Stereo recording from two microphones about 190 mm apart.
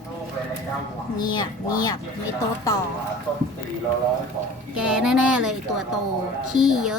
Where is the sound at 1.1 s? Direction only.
20° left (ahead or behind).